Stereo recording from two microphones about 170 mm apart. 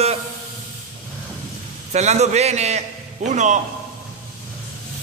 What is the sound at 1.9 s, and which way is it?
A man's voice, 40° right (ahead or behind).